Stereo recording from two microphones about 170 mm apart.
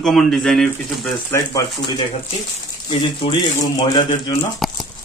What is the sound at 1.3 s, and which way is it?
Speech, 25° left (ahead or behind).